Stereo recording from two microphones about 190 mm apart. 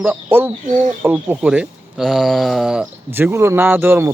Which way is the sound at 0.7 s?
40° right (ahead or behind).